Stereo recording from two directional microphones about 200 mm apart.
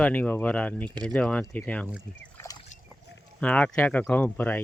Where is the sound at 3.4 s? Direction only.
5° left (ahead or behind).